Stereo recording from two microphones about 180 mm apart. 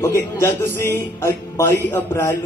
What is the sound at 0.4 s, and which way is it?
A woman's voice, 15° left (ahead or behind).